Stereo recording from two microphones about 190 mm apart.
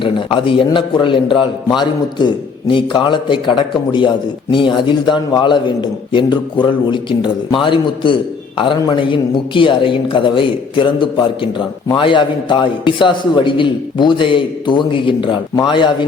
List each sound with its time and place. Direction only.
0.0 s a man's voice: 25° left (ahead or behind)